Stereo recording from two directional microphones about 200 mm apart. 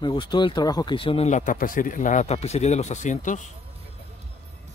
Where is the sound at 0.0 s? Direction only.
25° left (ahead or behind); by 3.4 s 40° left (ahead or behind).